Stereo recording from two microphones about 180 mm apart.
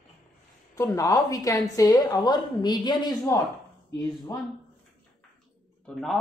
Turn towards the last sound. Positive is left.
turn(degrees=0)  # may be behind; listen again after turning